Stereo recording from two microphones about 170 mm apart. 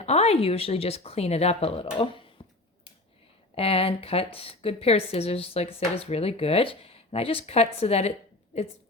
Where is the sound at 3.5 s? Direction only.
35° left (ahead or behind).